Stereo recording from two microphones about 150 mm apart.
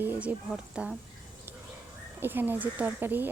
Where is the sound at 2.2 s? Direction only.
15° right (ahead or behind).